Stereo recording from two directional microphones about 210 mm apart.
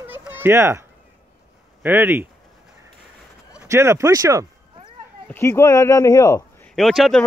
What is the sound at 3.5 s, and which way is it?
Speech, 10° right (ahead or behind).